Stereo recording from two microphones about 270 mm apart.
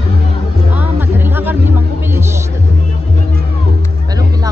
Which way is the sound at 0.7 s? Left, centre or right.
Centre.